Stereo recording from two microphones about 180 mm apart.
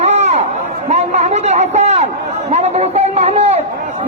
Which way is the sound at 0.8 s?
40° right (ahead or behind).